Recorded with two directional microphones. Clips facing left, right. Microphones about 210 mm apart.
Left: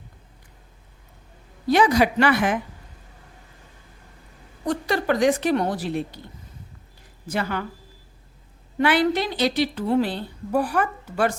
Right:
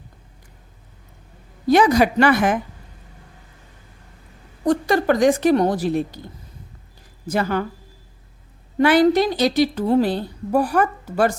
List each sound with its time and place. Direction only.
1.6 s a woman's voice: 45° right (ahead or behind)
4.6 s a woman's voice: 45° right (ahead or behind)
7.3 s a woman's voice: 40° right (ahead or behind)
8.8 s a woman's voice: 40° right (ahead or behind)